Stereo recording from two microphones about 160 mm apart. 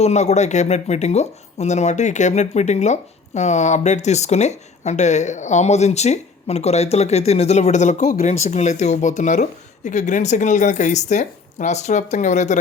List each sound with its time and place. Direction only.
0.0 s speech: 45° left (ahead or behind)